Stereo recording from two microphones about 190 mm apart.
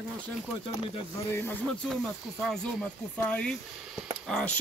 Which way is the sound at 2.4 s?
Centre (ahead or behind).